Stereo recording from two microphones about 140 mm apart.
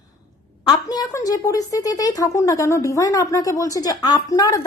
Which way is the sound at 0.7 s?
25° left (ahead or behind).